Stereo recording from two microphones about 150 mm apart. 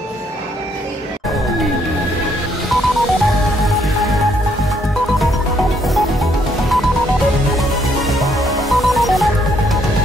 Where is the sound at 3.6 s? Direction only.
Centre (ahead or behind).